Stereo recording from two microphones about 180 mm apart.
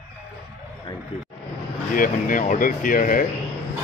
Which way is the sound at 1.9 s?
50° left (ahead or behind).